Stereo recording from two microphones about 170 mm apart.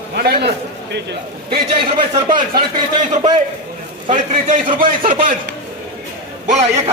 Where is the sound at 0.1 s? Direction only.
75° right (ahead or behind).